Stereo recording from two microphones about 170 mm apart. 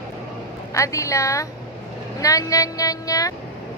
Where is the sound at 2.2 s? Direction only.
20° left (ahead or behind).